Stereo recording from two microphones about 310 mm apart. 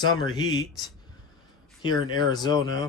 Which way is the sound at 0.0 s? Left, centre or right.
Centre.